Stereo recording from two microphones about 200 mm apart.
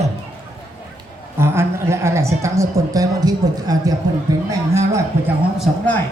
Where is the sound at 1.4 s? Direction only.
10° right (ahead or behind).